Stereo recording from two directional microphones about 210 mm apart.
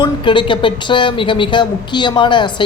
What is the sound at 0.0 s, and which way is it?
Speech, 25° left (ahead or behind).